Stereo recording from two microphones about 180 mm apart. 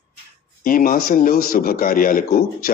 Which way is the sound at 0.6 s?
50° left (ahead or behind).